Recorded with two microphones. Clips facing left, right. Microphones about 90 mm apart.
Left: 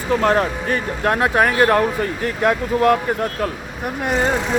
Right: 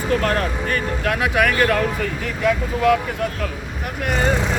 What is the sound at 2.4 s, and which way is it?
Speech, 50° left (ahead or behind).